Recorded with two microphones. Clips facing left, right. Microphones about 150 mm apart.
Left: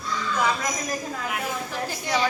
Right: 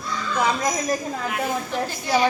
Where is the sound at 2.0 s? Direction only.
25° right (ahead or behind).